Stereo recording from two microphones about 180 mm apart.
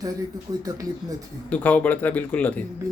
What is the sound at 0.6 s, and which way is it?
Speech, 20° right (ahead or behind).